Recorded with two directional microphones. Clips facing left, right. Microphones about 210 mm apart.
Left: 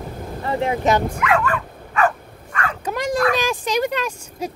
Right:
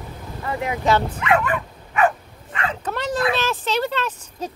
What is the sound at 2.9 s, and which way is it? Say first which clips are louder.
Bow-wow: left 4 dB; 10° left (ahead or behind).